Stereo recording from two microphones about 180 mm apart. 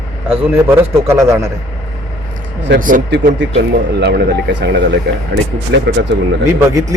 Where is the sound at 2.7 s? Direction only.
50° right (ahead or behind).